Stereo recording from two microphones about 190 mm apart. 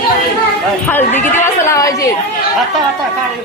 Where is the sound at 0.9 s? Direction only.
10° left (ahead or behind).